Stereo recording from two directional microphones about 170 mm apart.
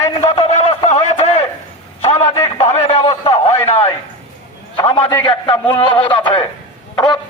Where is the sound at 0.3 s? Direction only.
35° left (ahead or behind).